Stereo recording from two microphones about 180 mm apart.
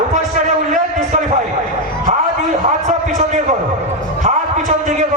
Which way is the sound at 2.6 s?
45° right (ahead or behind).